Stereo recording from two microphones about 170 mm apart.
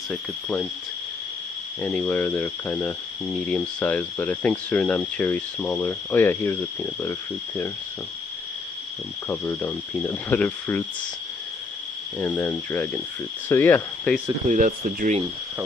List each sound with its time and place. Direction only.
0.1 s speech: 10° left (ahead or behind)
1.8 s speech: 10° left (ahead or behind)
3.3 s speech: centre (ahead or behind)
9.3 s speech: 10° left (ahead or behind)
12.2 s speech: 15° left (ahead or behind)
14.5 s speech: 55° right (ahead or behind)